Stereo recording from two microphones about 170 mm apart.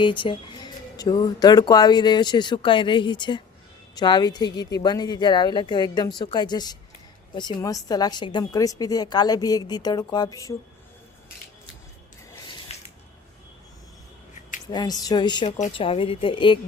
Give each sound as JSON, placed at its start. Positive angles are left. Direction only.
{"t": 0.0, "sound": "speech", "side_deg": 30}
{"t": 14.7, "sound": "speech", "side_deg": 25}
{"t": 15.4, "sound": "speech", "side_deg": 45}
{"t": 15.7, "sound": "a woman's voice", "side_deg": 30}